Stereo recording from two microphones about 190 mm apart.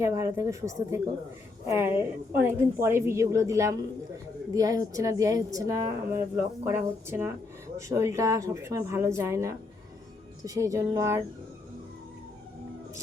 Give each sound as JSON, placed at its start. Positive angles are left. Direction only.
{"t": 0.0, "sound": "a woman's voice", "side_deg": -15}